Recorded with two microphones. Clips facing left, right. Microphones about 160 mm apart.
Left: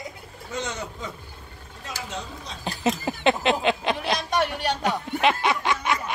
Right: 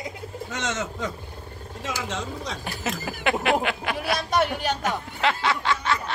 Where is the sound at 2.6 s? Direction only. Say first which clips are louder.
Left 10 dB; 20° left (ahead or behind).